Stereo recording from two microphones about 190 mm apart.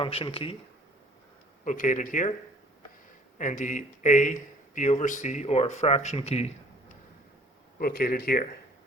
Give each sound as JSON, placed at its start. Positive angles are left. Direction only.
{"t": 0.0, "sound": "speech", "side_deg": 30}
{"t": 1.6, "sound": "speech", "side_deg": 45}
{"t": 3.3, "sound": "speech", "side_deg": 40}
{"t": 7.8, "sound": "speech", "side_deg": 50}